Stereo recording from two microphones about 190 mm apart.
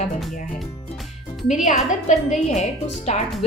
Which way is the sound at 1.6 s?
40° left (ahead or behind).